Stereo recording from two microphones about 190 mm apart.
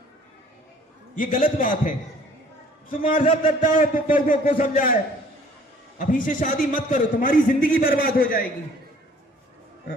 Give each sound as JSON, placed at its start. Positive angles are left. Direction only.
{"t": 1.1, "sound": "a man's voice", "side_deg": 45}
{"t": 2.9, "sound": "a man's voice", "side_deg": 45}
{"t": 6.0, "sound": "a man's voice", "side_deg": 45}